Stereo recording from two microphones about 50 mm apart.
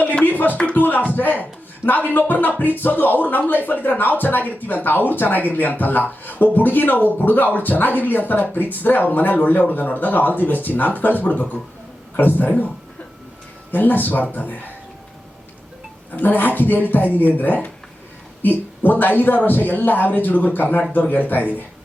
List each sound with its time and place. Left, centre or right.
0.0 s music: left
1.1 s speech: left
16.1 s speech: left
18.8 s speech: left